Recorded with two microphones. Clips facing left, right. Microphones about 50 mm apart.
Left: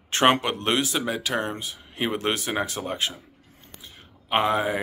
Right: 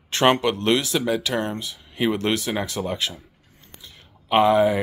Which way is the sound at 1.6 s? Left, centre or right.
Left.